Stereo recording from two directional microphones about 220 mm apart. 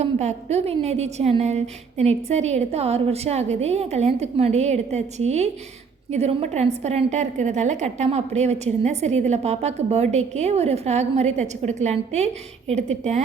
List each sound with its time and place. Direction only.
0.0 s a woman's voice: 30° right (ahead or behind)